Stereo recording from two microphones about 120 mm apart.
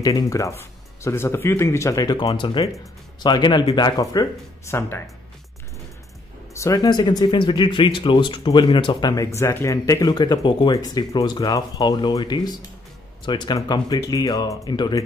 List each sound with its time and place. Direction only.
0.0 s speech: 30° left (ahead or behind)
6.5 s speech: 25° left (ahead or behind)